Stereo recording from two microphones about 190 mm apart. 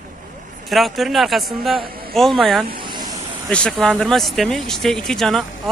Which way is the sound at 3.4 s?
5° left (ahead or behind).